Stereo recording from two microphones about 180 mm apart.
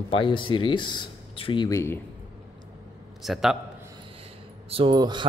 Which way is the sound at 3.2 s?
Centre (ahead or behind).